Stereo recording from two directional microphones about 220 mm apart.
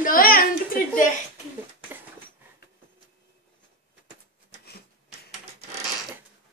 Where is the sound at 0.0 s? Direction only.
40° left (ahead or behind).